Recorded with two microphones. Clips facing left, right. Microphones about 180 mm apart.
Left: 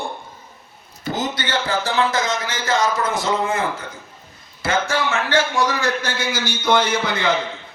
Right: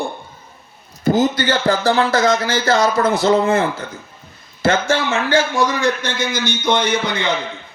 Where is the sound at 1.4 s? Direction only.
35° right (ahead or behind).